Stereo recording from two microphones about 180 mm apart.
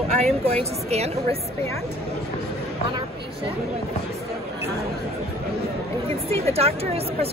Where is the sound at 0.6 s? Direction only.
35° right (ahead or behind).